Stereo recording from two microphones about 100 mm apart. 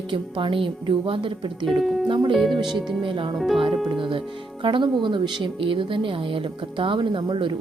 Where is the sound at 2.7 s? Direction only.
55° right (ahead or behind).